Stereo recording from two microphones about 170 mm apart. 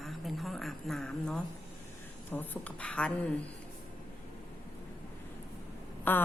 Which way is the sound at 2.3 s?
10° left (ahead or behind).